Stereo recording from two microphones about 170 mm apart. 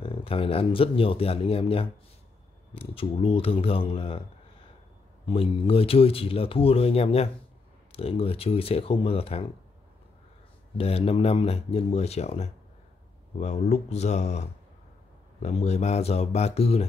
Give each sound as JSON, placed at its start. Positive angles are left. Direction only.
{"t": 0.0, "sound": "speech", "side_deg": 30}
{"t": 5.2, "sound": "speech", "side_deg": 35}
{"t": 10.8, "sound": "speech", "side_deg": 35}